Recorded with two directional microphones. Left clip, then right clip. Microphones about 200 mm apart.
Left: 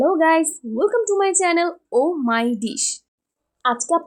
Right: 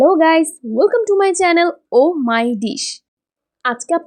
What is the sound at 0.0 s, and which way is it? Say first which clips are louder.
A woman's voice: right 5 dB; 30° right (ahead or behind).